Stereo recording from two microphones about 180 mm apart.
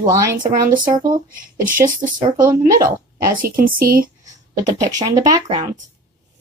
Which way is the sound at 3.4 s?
50° right (ahead or behind).